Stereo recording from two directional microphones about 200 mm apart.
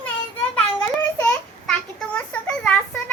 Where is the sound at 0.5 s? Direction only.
5° left (ahead or behind).